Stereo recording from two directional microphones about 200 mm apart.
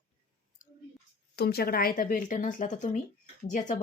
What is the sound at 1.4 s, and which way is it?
A woman's voice, 50° left (ahead or behind).